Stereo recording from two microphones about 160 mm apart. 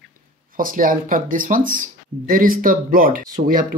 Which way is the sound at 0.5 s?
60° right (ahead or behind).